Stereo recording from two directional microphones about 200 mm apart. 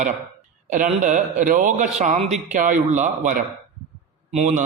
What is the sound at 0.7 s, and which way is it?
A man's voice, 40° right (ahead or behind).